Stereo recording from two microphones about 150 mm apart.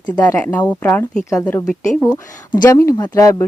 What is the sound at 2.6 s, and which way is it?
Speech, 20° left (ahead or behind).